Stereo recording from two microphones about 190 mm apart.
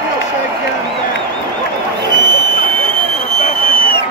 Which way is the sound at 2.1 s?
25° right (ahead or behind).